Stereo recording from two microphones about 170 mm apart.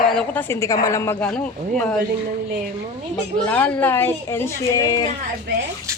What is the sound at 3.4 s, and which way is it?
Speech, 10° left (ahead or behind).